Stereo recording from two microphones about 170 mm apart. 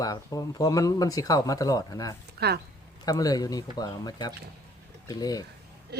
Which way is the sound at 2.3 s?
70° right (ahead or behind).